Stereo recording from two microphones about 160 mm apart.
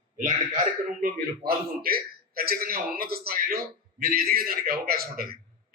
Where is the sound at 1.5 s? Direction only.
70° right (ahead or behind).